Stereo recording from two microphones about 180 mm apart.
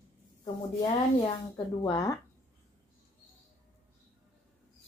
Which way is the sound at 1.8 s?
20° left (ahead or behind).